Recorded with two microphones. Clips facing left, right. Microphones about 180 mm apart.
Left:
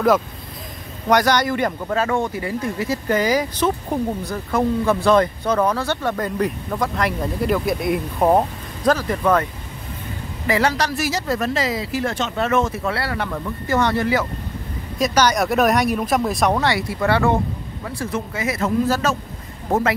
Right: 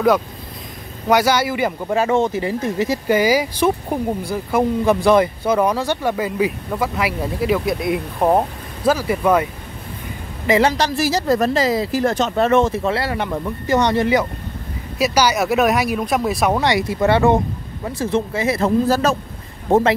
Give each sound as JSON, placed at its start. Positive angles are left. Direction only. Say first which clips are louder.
{"t": 1.0, "sound": "speech", "louder": "right 1 dB", "side_deg": -5}
{"t": 1.9, "sound": "speech", "louder": "right 7 dB", "side_deg": -20}
{"t": 3.1, "sound": "speech", "louder": "right 2 dB", "side_deg": -10}
{"t": 15.0, "sound": "speech", "louder": "right 1 dB", "side_deg": -10}
{"t": 16.6, "sound": "speech", "louder": "right 3 dB", "side_deg": -20}